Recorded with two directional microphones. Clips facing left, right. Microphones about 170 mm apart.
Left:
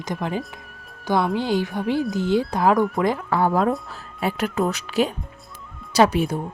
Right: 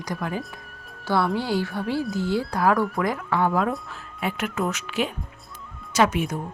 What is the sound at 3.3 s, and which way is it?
Speech, 35° left (ahead or behind).